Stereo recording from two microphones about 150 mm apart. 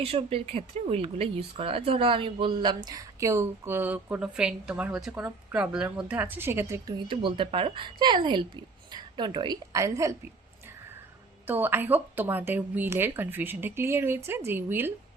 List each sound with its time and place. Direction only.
0.0 s a woman's voice: 40° right (ahead or behind); by 6.9 s 20° right (ahead or behind)
7.1 s speech: 35° right (ahead or behind)
11.4 s a woman's voice: 15° right (ahead or behind)